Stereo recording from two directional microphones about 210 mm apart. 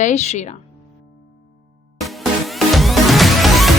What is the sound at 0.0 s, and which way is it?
Speech, 35° left (ahead or behind).